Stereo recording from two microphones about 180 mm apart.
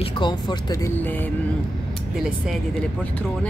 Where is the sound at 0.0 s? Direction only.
25° left (ahead or behind).